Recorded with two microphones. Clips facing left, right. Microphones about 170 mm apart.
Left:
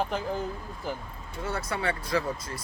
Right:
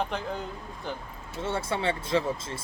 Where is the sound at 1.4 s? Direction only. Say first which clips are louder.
Right 2 dB; 25° right (ahead or behind).